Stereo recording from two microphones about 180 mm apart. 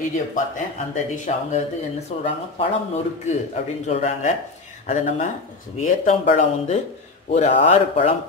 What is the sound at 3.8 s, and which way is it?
Speech, 40° left (ahead or behind).